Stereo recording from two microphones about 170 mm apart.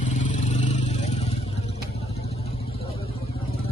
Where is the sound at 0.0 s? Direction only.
45° left (ahead or behind).